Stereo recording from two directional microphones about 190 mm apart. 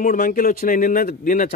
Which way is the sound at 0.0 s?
45° left (ahead or behind).